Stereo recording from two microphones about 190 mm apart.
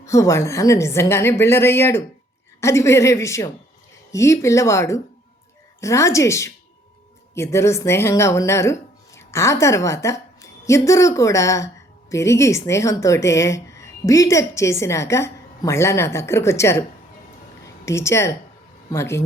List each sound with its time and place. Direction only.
0.0 s a woman's voice: 15° left (ahead or behind)
17.8 s a woman's voice: 15° left (ahead or behind)